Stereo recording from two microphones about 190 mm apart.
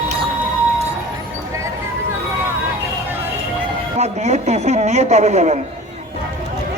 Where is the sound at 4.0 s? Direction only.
35° right (ahead or behind).